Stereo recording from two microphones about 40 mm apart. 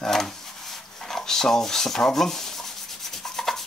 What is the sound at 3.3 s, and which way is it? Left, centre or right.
Rub, centre.